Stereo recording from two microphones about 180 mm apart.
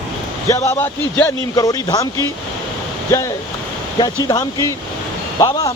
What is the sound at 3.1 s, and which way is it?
Speech, 20° left (ahead or behind).